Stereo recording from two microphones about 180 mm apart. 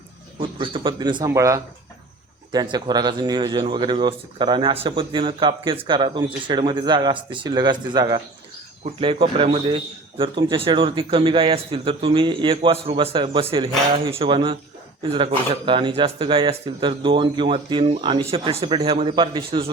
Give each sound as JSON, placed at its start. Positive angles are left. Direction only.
{"t": 0.3, "sound": "a man's voice", "side_deg": -30}